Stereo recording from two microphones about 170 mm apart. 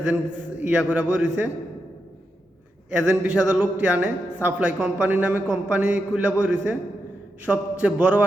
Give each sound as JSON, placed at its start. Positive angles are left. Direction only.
{"t": 0.0, "sound": "a man's voice", "side_deg": -5}
{"t": 2.9, "sound": "a man's voice", "side_deg": -5}